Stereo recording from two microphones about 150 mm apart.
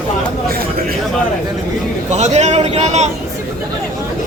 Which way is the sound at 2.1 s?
50° right (ahead or behind).